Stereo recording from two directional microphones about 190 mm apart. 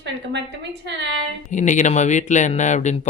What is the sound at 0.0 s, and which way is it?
A woman's voice, 65° right (ahead or behind).